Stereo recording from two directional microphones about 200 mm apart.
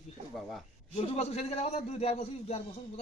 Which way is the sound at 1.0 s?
30° left (ahead or behind).